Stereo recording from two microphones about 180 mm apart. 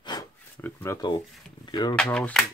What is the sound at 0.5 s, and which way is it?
Speech, 10° left (ahead or behind).